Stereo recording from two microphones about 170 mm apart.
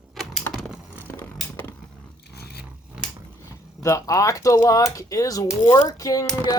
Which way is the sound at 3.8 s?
20° left (ahead or behind).